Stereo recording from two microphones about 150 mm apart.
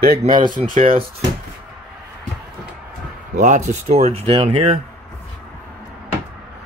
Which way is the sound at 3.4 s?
50° right (ahead or behind).